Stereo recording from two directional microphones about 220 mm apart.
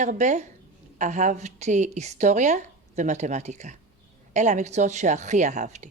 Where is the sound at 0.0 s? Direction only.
35° right (ahead or behind).